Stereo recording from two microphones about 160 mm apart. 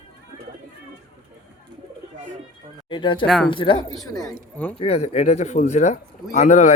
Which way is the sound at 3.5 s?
30° left (ahead or behind).